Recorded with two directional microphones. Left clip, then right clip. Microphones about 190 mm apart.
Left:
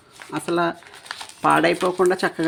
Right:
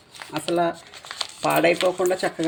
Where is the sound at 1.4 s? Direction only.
30° left (ahead or behind).